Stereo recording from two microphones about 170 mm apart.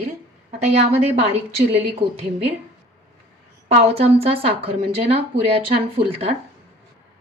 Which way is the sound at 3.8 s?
35° right (ahead or behind).